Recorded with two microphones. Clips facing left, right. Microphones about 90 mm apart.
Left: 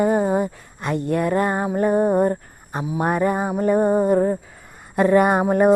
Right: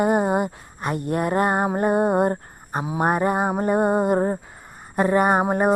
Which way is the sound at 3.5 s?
35° right (ahead or behind).